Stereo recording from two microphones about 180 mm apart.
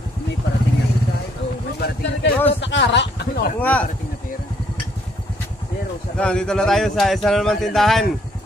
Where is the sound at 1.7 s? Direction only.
70° left (ahead or behind).